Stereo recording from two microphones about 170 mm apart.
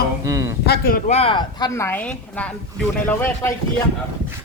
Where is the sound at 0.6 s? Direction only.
65° left (ahead or behind).